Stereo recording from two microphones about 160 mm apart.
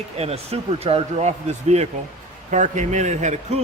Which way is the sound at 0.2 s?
40° right (ahead or behind).